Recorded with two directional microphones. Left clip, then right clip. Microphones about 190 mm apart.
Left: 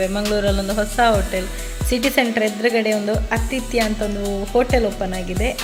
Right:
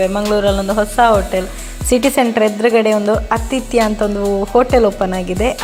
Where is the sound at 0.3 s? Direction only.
10° right (ahead or behind).